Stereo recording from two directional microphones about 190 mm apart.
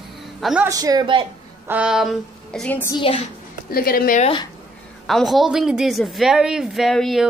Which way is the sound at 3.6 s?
50° left (ahead or behind).